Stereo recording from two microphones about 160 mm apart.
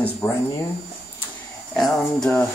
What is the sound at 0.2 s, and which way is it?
Speech, 10° left (ahead or behind).